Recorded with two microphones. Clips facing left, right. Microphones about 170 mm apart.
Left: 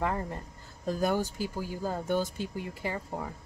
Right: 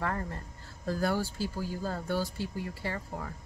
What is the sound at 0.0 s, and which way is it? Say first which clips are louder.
Speech: left 3 dB; 15° left (ahead or behind).